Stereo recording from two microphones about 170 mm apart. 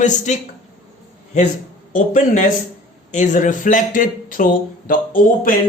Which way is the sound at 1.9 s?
45° left (ahead or behind).